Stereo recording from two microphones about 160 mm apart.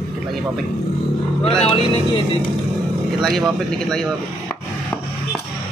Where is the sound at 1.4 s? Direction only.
35° left (ahead or behind).